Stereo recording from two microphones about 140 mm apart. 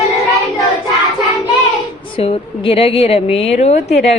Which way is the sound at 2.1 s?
40° left (ahead or behind).